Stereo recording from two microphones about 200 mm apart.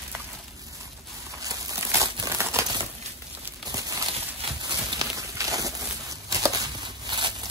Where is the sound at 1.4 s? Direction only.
15° right (ahead or behind).